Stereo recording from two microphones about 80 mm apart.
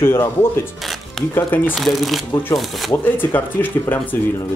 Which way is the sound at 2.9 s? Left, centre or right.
Left.